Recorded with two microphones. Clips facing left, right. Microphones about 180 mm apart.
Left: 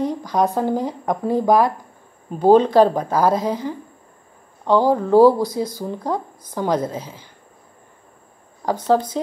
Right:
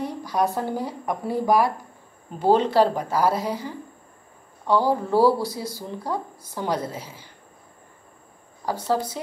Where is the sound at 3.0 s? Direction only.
45° left (ahead or behind).